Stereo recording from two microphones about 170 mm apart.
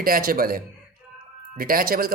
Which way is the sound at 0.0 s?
60° right (ahead or behind).